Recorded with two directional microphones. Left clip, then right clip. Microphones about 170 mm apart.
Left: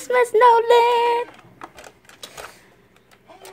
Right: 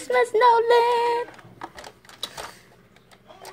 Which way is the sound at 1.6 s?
10° right (ahead or behind).